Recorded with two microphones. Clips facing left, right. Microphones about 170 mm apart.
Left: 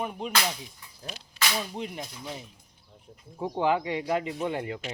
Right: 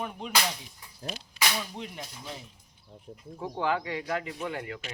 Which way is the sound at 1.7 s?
20° left (ahead or behind).